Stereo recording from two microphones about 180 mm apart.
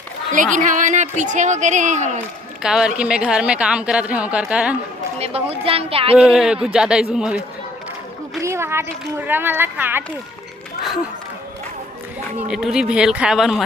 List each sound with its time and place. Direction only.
0.5 s speech: 45° right (ahead or behind)
2.6 s a woman's voice: 5° right (ahead or behind)
5.2 s speech: 35° right (ahead or behind)
6.1 s a woman's voice: 5° right (ahead or behind)
8.4 s speech: 15° right (ahead or behind)
12.5 s a woman's voice: 5° right (ahead or behind)